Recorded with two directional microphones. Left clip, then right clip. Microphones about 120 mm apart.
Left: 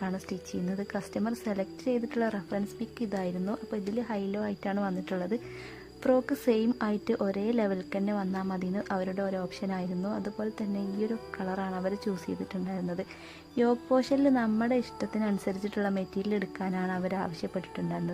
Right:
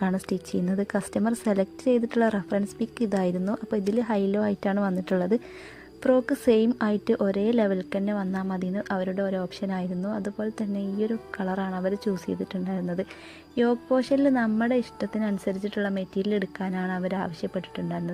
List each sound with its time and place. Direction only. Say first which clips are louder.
0.0 s a woman's voice: right 7 dB; 45° right (ahead or behind)
6.0 s speech: right 4 dB; 30° right (ahead or behind)
13.6 s speech: right 3 dB; 20° right (ahead or behind)